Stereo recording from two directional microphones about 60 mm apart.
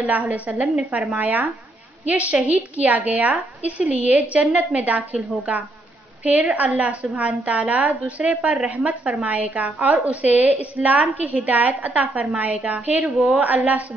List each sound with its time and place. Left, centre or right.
0.1 s a woman's voice: right
0.6 s a woman's voice: centre
1.1 s a woman's voice: right
13.0 s a woman's voice: centre
13.4 s a woman's voice: right